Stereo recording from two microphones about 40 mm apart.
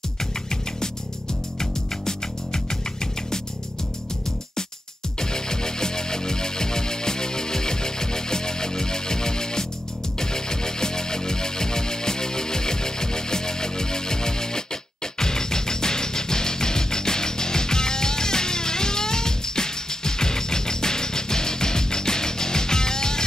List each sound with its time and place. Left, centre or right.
1.6 s music: centre
5.2 s music: centre